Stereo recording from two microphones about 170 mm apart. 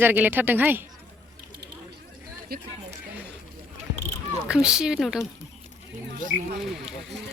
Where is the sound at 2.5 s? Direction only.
65° right (ahead or behind).